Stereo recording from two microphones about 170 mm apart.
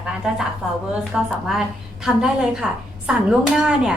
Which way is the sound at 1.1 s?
Centre (ahead or behind).